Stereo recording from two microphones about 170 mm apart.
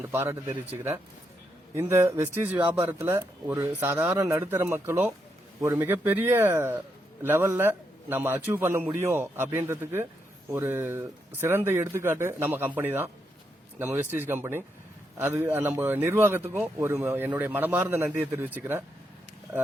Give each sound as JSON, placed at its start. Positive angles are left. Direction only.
{"t": 0.1, "sound": "a man's voice", "side_deg": -15}
{"t": 1.7, "sound": "a man's voice", "side_deg": -15}